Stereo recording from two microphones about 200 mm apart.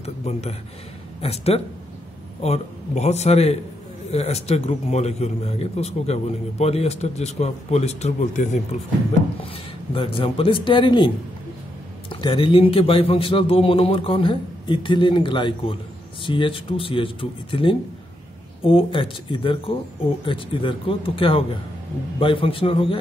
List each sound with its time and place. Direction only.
0.0 s a man's voice: 30° left (ahead or behind)
9.9 s a man's voice: 25° left (ahead or behind)
12.1 s a man's voice: 25° left (ahead or behind)